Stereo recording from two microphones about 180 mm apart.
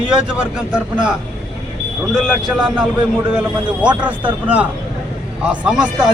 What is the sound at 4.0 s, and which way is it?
A man's voice, 10° right (ahead or behind).